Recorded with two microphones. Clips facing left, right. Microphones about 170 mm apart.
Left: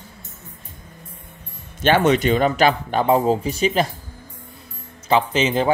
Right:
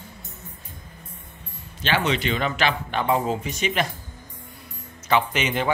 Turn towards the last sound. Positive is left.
turn(degrees=30)  # may be behind; listen again after turning